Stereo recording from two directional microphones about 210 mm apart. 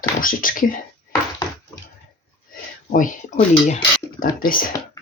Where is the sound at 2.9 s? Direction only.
40° left (ahead or behind).